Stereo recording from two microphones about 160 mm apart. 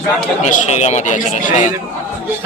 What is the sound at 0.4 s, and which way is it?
A man's voice, 45° left (ahead or behind).